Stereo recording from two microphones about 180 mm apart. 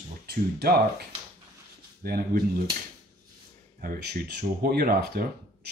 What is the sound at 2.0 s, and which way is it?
Speech, 55° right (ahead or behind).